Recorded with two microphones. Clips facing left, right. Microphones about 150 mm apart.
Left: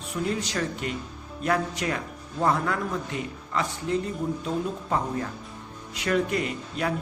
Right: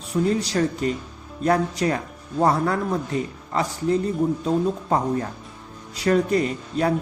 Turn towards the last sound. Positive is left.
turn(degrees=-35)  # may be behind; listen again after turning